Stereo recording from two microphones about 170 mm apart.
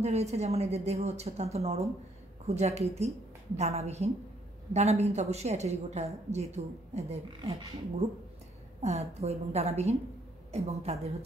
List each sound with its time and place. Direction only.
0.0 s a woman's voice: 40° right (ahead or behind)
8.8 s a woman's voice: 40° right (ahead or behind)